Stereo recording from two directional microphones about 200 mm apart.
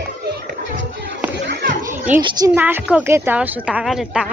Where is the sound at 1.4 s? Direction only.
55° right (ahead or behind).